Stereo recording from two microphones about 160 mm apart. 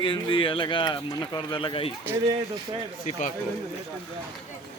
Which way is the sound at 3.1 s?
50° left (ahead or behind).